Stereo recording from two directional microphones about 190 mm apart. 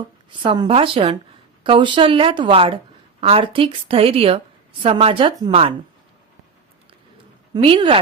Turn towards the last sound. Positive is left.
turn(degrees=-25)  # may be behind; listen again after turning